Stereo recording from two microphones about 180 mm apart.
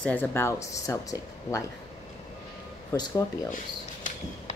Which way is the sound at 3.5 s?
45° left (ahead or behind).